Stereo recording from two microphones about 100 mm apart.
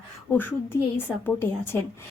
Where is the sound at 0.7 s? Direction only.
30° left (ahead or behind).